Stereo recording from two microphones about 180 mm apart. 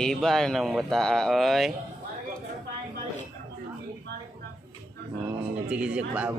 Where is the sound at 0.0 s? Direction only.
Centre (ahead or behind).